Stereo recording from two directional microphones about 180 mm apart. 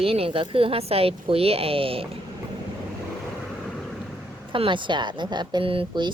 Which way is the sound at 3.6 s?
Centre (ahead or behind).